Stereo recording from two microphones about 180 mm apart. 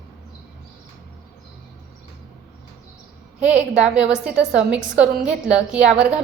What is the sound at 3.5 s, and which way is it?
A woman's voice, 5° right (ahead or behind).